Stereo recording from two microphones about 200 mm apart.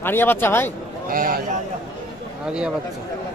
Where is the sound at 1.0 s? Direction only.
45° right (ahead or behind).